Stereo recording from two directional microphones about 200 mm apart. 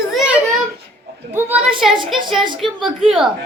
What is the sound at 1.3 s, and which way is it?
Speech, 5° right (ahead or behind).